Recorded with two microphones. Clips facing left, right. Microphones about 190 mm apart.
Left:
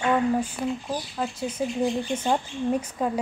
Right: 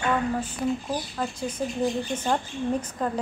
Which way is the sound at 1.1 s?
5° left (ahead or behind).